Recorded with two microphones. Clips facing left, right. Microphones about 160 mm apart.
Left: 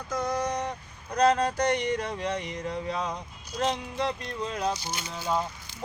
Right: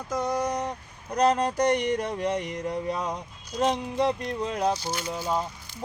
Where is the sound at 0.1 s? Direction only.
10° right (ahead or behind).